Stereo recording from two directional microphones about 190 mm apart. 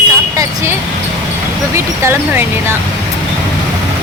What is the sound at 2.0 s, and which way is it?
Speech, 10° right (ahead or behind).